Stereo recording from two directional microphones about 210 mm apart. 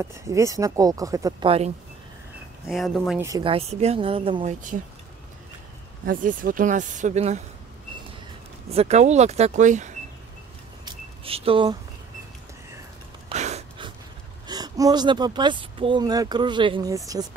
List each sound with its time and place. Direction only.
0.0 s speech: 15° right (ahead or behind)
2.7 s speech: centre (ahead or behind)
3.2 s speech: 15° right (ahead or behind)
6.0 s speech: 40° right (ahead or behind)
8.6 s speech: 30° right (ahead or behind)
10.9 s a sound: 25° right (ahead or behind)
13.3 s gasp: 30° right (ahead or behind)
14.5 s speech: 20° right (ahead or behind)